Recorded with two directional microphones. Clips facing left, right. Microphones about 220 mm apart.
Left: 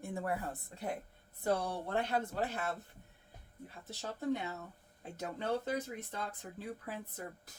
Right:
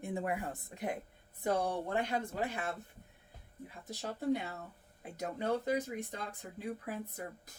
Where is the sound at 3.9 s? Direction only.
15° right (ahead or behind).